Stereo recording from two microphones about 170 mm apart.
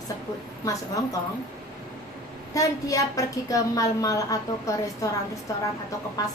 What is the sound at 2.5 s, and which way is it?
A woman's voice, 20° left (ahead or behind).